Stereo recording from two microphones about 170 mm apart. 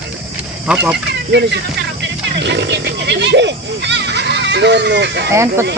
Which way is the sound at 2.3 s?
90° right.